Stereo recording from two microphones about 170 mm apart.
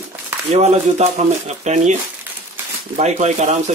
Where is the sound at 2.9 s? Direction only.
40° right (ahead or behind).